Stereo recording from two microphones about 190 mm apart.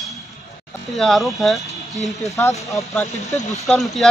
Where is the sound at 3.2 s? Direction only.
35° left (ahead or behind).